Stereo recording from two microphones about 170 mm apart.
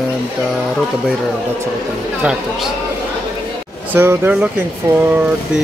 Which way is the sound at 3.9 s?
10° right (ahead or behind).